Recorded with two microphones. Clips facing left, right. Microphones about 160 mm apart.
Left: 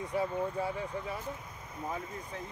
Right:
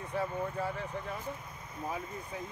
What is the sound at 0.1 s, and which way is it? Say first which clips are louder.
Speech: left 2 dB; 15° left (ahead or behind).